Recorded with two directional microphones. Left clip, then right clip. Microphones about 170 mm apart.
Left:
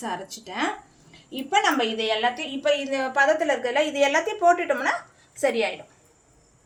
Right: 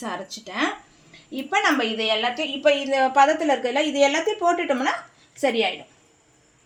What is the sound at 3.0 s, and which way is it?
A woman's voice, 50° right (ahead or behind).